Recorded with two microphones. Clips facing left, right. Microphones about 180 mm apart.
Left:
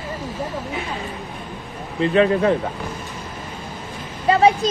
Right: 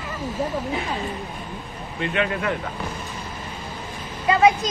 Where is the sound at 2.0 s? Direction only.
35° left (ahead or behind).